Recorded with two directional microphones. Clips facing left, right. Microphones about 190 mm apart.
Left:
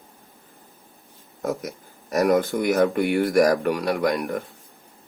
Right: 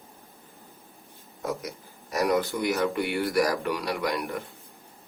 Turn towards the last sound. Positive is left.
turn(degrees=50)  # may be behind; listen again after turning